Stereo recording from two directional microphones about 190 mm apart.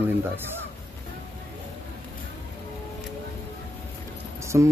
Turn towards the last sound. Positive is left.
turn(degrees=-15)  # may be behind; listen again after turning